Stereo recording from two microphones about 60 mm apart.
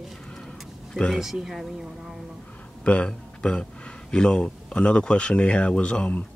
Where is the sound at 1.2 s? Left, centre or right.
Centre.